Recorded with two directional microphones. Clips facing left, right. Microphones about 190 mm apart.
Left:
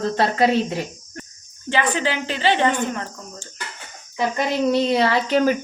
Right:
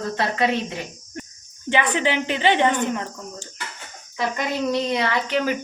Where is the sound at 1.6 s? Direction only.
20° right (ahead or behind).